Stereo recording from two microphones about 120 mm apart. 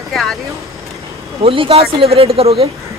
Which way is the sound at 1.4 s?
50° right (ahead or behind).